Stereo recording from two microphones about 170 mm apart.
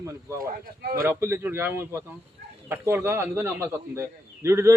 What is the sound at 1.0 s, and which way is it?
A man's voice, 15° right (ahead or behind).